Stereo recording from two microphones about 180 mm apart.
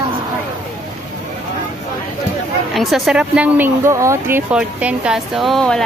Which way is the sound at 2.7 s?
Centre (ahead or behind).